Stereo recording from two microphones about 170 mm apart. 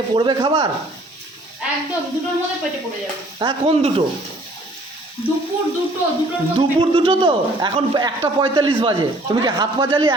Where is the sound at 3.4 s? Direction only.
30° right (ahead or behind).